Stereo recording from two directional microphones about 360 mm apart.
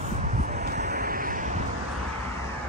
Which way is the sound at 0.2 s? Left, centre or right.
Centre.